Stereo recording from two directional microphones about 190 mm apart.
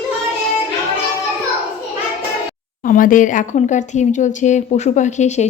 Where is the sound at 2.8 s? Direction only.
45° left (ahead or behind).